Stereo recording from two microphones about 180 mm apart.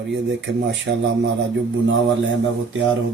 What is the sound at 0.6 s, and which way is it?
Speech, 85° right.